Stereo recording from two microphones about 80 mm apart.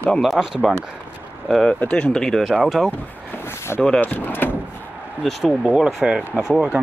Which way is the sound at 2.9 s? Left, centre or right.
Left.